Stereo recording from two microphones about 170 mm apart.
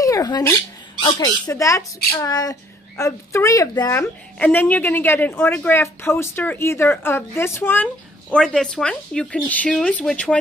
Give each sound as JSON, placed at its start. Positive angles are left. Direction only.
{"t": 0.0, "sound": "a sound", "side_deg": 20}
{"t": 1.0, "sound": "a child's voice", "side_deg": 25}
{"t": 4.4, "sound": "speech", "side_deg": 10}